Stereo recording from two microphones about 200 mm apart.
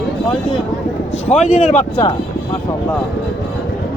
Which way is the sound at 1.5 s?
35° left (ahead or behind).